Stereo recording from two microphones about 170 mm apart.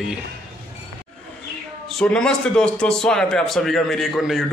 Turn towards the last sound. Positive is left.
turn(degrees=0)  # may be behind; listen again after turning